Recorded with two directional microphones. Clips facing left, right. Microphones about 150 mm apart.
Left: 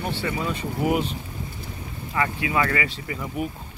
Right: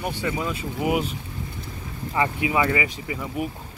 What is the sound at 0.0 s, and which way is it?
Speech, 10° right (ahead or behind).